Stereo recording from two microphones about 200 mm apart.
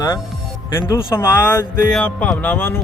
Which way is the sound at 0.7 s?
10° left (ahead or behind).